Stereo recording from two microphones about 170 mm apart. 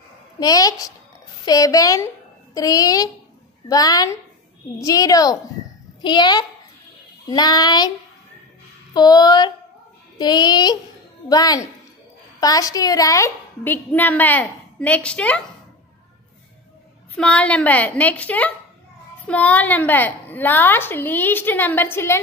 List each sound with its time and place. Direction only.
0.4 s child singing: 20° left (ahead or behind)
8.9 s child singing: 25° left (ahead or behind)
12.4 s a woman's voice: 20° left (ahead or behind)
17.2 s a woman's voice: 5° left (ahead or behind)